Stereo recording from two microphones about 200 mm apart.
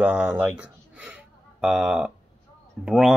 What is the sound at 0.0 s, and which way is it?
Speech, 5° right (ahead or behind).